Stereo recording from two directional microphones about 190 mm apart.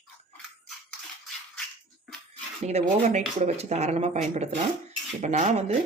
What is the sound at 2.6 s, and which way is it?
Speech, 35° right (ahead or behind).